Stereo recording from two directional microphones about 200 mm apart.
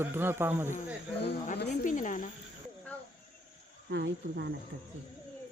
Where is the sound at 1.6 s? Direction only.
40° left (ahead or behind).